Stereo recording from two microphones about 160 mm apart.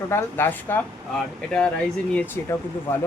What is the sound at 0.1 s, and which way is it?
Speech, 15° left (ahead or behind).